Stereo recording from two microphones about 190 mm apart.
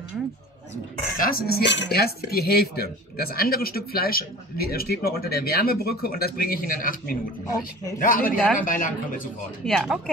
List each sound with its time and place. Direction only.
1.1 s speech: 50° left (ahead or behind)
9.8 s speech: centre (ahead or behind)